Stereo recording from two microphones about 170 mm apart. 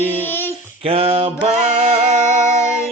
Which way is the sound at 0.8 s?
35° right (ahead or behind).